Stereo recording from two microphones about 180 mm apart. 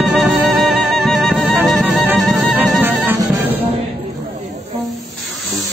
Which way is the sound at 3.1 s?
15° right (ahead or behind).